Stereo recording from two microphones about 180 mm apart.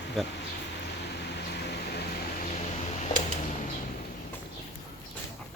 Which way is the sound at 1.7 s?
65° left (ahead or behind).